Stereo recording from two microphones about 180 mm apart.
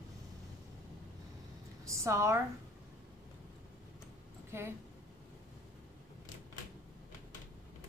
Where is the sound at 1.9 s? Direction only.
15° right (ahead or behind).